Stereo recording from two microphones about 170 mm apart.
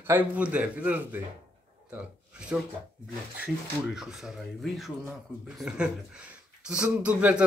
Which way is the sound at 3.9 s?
Centre (ahead or behind).